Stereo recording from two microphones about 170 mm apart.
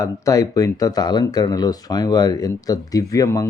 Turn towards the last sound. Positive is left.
turn(degrees=20)  # may be behind; listen again after turning